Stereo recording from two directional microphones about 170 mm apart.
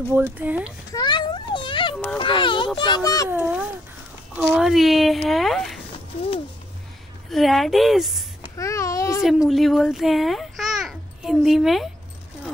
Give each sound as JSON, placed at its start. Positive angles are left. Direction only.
{"t": 0.1, "sound": "speech", "side_deg": -10}
{"t": 0.9, "sound": "a sound", "side_deg": 25}
{"t": 2.8, "sound": "a child's voice", "side_deg": 25}
{"t": 3.3, "sound": "a woman's voice", "side_deg": -10}
{"t": 7.2, "sound": "a woman's voice", "side_deg": 0}
{"t": 8.4, "sound": "babbling", "side_deg": 20}
{"t": 9.2, "sound": "a child's voice", "side_deg": 0}